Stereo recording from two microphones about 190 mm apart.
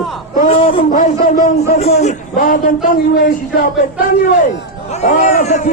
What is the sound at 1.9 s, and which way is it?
Speech, 35° left (ahead or behind).